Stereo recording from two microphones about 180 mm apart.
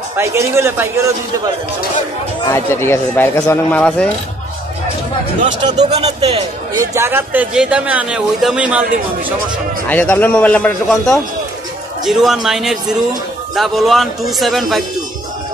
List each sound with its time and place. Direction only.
0.2 s speech: 15° right (ahead or behind)
2.4 s speech: 15° left (ahead or behind)
5.9 s speech: 35° right (ahead or behind)
6.8 s speech: 15° right (ahead or behind)
9.8 s a man's voice: 10° left (ahead or behind)